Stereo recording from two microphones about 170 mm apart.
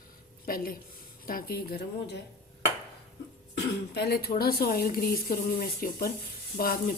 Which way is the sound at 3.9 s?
70° left (ahead or behind).